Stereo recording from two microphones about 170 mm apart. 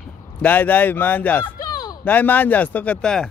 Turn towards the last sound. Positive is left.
turn(degrees=5)  # may be behind; listen again after turning